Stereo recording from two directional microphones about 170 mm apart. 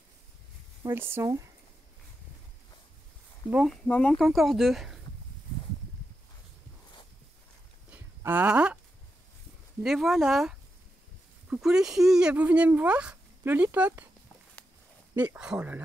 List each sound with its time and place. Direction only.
0.8 s speech: 15° right (ahead or behind)
3.4 s speech: 5° right (ahead or behind)
7.9 s a sound: 10° right (ahead or behind)
9.8 s speech: centre (ahead or behind)
15.1 s speech: 5° right (ahead or behind)